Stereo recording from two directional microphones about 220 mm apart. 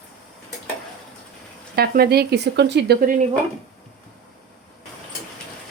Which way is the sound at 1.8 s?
45° right (ahead or behind).